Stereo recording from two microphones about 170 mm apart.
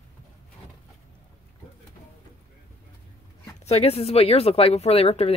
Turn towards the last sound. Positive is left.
turn(degrees=35)  # may be behind; listen again after turning